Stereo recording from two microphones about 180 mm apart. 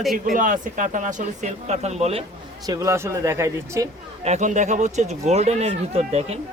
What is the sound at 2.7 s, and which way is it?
Speech, 15° right (ahead or behind).